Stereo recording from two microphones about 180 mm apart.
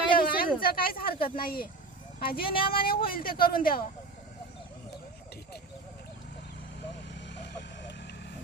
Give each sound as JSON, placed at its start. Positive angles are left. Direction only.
{"t": 0.1, "sound": "a sound", "side_deg": 55}
{"t": 0.6, "sound": "speech", "side_deg": 55}
{"t": 7.3, "sound": "vehicle", "side_deg": 75}